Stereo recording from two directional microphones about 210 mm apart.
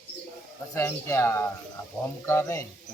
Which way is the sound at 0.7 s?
15° left (ahead or behind).